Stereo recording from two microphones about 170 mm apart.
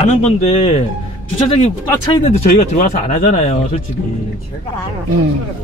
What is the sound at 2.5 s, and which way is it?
Speech, 50° left (ahead or behind).